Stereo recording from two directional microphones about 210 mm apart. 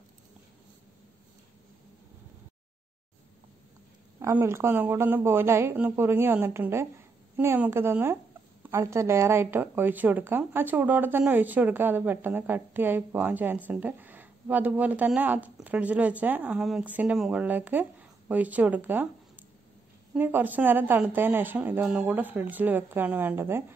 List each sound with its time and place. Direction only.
4.2 s a woman's voice: 10° right (ahead or behind)